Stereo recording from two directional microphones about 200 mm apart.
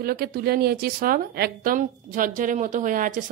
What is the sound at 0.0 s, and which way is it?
A woman's voice, 50° right (ahead or behind).